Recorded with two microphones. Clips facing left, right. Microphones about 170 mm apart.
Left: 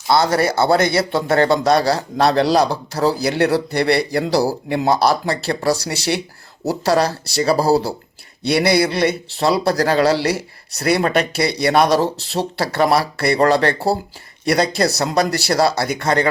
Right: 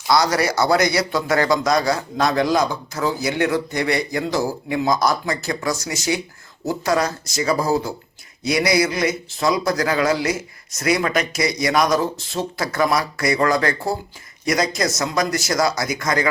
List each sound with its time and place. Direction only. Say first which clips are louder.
0.1 s a man's voice: left 2 dB; 30° left (ahead or behind)